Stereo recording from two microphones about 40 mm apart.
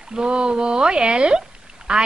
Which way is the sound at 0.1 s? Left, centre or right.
Right.